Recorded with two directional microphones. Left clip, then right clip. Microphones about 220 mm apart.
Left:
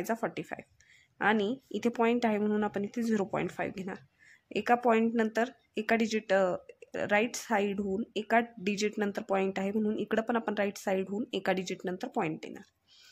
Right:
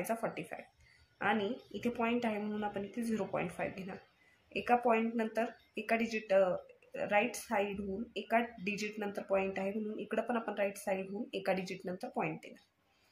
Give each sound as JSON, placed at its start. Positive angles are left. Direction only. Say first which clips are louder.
{"t": 0.0, "sound": "speech", "louder": "left 3 dB", "side_deg": 50}